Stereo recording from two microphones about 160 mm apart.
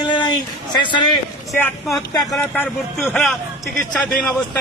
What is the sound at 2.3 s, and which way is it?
A man's voice, centre (ahead or behind).